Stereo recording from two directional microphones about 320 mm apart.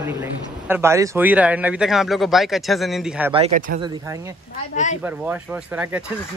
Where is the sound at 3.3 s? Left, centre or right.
Centre.